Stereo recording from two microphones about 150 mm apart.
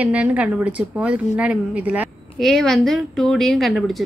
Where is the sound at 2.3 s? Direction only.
Centre (ahead or behind).